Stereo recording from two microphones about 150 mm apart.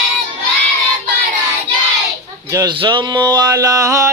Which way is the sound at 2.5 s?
30° right (ahead or behind).